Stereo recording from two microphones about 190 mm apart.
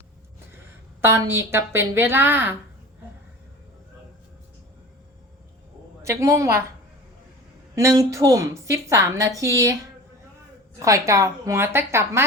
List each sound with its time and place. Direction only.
1.0 s a woman's voice: 15° right (ahead or behind)
6.0 s a woman's voice: 15° right (ahead or behind)
7.8 s a woman's voice: 15° right (ahead or behind)
10.8 s a woman's voice: 15° right (ahead or behind)